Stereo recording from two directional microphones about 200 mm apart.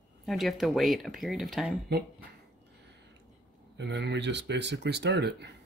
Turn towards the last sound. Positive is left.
turn(degrees=-60)  # may be behind; listen again after turning